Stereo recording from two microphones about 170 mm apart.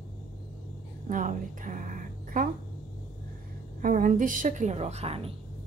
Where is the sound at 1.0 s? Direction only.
50° right (ahead or behind).